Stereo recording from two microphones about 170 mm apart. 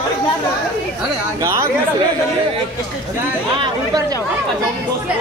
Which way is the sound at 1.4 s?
15° right (ahead or behind).